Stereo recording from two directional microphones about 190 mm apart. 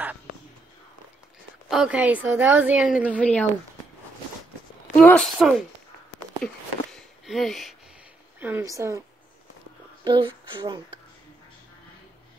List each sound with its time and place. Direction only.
1.7 s a woman's voice: 5° right (ahead or behind)
3.2 s speech: 5° left (ahead or behind)
5.0 s a woman's voice: 5° left (ahead or behind)
6.1 s a sound: 5° left (ahead or behind)
8.4 s a woman's voice: 10° right (ahead or behind)
10.0 s speech: 25° right (ahead or behind)